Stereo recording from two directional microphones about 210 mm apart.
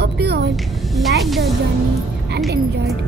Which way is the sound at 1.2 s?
Centre (ahead or behind).